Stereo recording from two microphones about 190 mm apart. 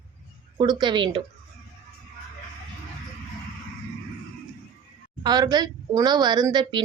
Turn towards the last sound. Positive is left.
turn(degrees=-25)  # may be behind; listen again after turning